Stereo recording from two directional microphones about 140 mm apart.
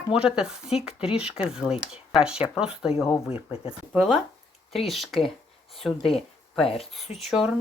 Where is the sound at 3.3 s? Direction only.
40° left (ahead or behind).